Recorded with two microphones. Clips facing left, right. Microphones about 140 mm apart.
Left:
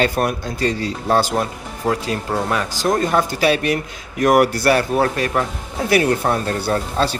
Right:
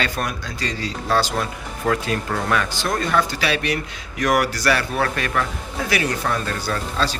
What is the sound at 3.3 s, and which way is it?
Speech, 45° left (ahead or behind).